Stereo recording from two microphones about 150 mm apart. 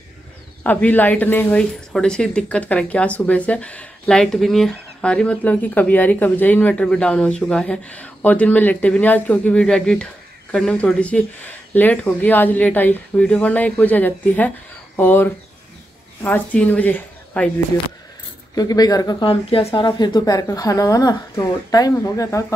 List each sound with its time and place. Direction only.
0.7 s a woman's voice: 10° left (ahead or behind)
18.5 s speech: 25° left (ahead or behind)